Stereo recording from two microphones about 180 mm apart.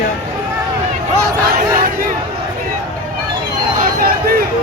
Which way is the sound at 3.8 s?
55° right (ahead or behind).